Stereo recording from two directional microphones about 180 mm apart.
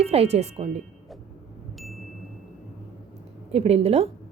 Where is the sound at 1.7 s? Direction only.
Centre (ahead or behind).